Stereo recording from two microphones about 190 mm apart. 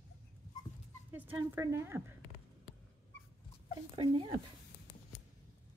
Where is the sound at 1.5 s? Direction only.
15° right (ahead or behind).